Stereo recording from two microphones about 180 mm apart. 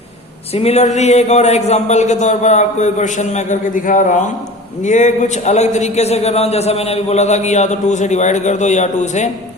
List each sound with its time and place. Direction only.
0.5 s a man's voice: 35° left (ahead or behind)